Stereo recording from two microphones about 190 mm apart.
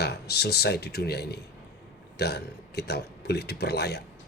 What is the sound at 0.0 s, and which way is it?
Speech, 60° left (ahead or behind).